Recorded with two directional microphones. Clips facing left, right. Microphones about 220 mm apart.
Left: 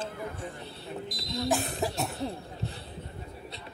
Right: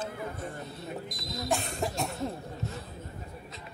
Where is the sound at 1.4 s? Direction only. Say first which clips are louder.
Left 2 dB; centre (ahead or behind).